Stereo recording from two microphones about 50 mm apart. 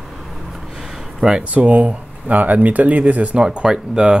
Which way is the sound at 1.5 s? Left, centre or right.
Right.